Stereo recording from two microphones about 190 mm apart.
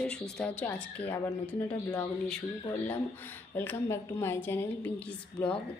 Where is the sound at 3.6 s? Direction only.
10° left (ahead or behind).